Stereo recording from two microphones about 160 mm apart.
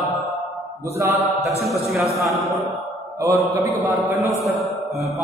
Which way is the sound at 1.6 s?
Centre (ahead or behind).